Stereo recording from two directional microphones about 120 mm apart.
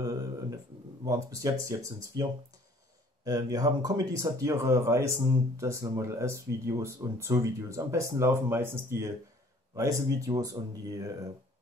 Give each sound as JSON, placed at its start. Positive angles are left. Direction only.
{"t": 0.0, "sound": "a sound", "side_deg": -30}
{"t": 1.0, "sound": "speech", "side_deg": -25}
{"t": 3.3, "sound": "speech", "side_deg": -30}